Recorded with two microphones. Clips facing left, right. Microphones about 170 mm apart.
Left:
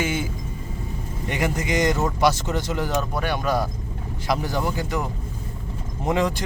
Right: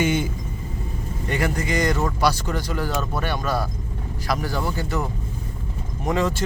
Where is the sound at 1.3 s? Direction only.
15° left (ahead or behind).